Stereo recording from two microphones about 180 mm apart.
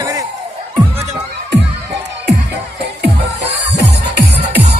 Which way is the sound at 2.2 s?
70° right (ahead or behind).